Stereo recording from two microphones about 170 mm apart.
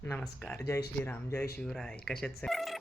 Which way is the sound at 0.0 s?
10° left (ahead or behind).